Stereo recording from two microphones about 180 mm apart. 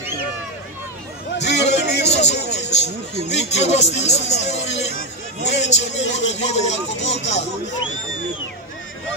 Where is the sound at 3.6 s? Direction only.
40° left (ahead or behind).